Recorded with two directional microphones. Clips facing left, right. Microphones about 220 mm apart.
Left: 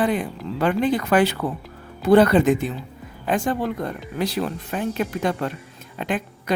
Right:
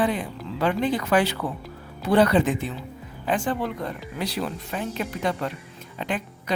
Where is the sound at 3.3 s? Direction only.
45° left (ahead or behind).